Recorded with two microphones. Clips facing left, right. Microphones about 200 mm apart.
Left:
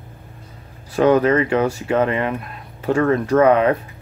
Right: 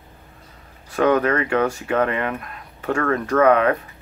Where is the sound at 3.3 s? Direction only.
30° left (ahead or behind).